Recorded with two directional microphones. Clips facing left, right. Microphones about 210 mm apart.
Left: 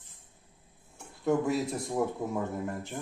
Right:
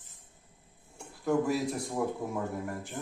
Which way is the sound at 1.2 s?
20° left (ahead or behind).